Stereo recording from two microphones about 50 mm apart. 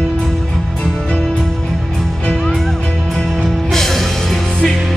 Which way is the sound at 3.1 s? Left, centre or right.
Centre.